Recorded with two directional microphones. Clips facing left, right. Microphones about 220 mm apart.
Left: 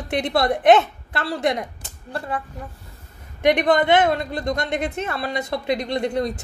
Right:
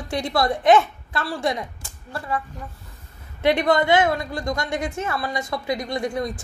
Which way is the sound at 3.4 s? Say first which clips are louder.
Left 1 dB; 15° left (ahead or behind).